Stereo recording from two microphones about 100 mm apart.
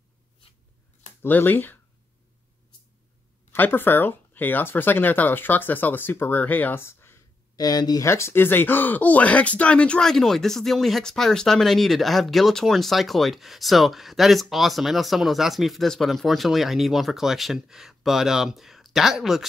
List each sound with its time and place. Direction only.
1.2 s speech: 20° left (ahead or behind)
3.5 s speech: 20° left (ahead or behind)
7.5 s speech: 40° left (ahead or behind)
8.1 s speech: 25° left (ahead or behind); by 19.4 s 5° right (ahead or behind)